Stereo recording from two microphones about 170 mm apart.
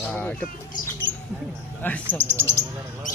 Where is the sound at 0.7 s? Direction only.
50° left (ahead or behind).